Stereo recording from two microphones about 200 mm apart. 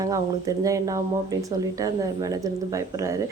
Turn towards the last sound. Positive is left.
turn(degrees=-15)  # may be behind; listen again after turning